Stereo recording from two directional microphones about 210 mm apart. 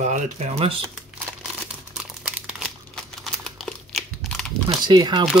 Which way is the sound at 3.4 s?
Centre (ahead or behind).